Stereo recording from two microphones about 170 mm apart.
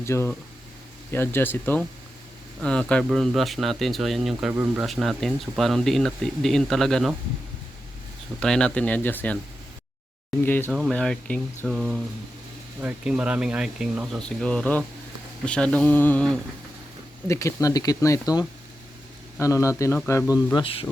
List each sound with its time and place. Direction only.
0.0 s speech: 15° left (ahead or behind)
8.4 s speech: 5° left (ahead or behind)
10.4 s speech: 10° left (ahead or behind)
10.7 s speech: 5° right (ahead or behind)
17.2 s speech: 15° left (ahead or behind)